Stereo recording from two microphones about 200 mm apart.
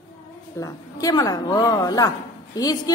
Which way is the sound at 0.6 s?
15° left (ahead or behind).